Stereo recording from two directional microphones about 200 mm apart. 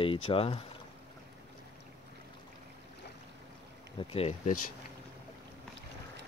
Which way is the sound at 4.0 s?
30° left (ahead or behind).